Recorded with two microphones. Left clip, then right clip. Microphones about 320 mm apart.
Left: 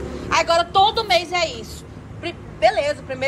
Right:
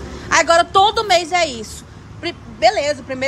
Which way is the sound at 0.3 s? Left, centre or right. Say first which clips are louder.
Right 5 dB; right.